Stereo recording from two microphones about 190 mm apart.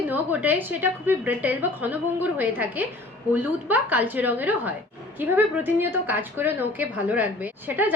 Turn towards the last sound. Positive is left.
turn(degrees=-10)  # may be behind; listen again after turning